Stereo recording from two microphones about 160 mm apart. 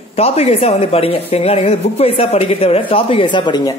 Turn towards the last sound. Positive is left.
turn(degrees=25)  # may be behind; listen again after turning